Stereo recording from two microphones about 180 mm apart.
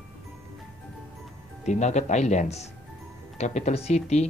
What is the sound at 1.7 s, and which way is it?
Speech, 40° left (ahead or behind).